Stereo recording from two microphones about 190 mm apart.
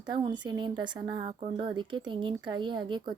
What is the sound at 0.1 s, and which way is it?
Speech, 25° right (ahead or behind).